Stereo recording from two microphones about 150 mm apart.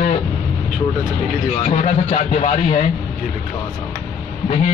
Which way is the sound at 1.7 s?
45° left (ahead or behind).